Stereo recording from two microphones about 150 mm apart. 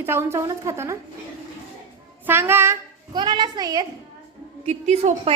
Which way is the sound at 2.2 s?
15° right (ahead or behind).